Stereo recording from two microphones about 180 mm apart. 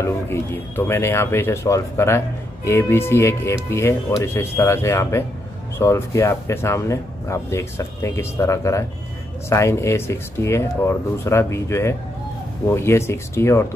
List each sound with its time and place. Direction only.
0.0 s speech: 15° left (ahead or behind)